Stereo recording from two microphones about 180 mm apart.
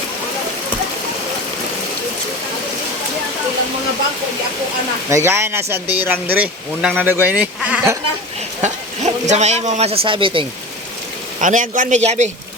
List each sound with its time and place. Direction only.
5.0 s speech: 15° right (ahead or behind)
8.6 s speech: 40° right (ahead or behind)
11.3 s a man's voice: 45° right (ahead or behind)